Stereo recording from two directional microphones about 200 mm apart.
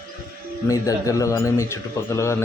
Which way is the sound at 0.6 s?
15° left (ahead or behind).